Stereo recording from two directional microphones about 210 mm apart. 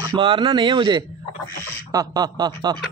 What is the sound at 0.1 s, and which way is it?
A man's voice, 20° right (ahead or behind).